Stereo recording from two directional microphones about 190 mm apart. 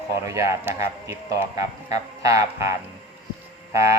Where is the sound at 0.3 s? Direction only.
15° right (ahead or behind).